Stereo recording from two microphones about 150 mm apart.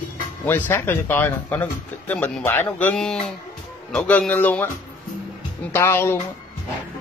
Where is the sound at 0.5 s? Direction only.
15° left (ahead or behind).